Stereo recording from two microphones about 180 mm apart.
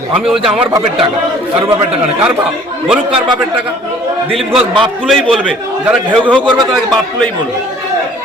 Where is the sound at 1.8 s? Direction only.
5° right (ahead or behind).